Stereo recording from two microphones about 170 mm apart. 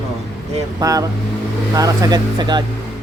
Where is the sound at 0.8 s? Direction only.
20° right (ahead or behind).